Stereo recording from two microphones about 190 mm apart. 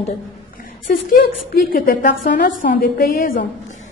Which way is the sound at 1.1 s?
50° left (ahead or behind).